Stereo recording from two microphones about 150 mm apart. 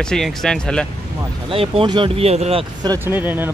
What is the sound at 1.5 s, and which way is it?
Speech, 40° right (ahead or behind).